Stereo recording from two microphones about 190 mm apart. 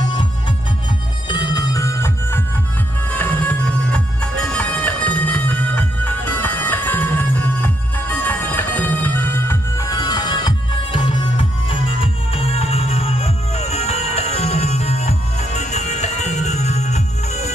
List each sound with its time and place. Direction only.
1.3 s music: 20° left (ahead or behind)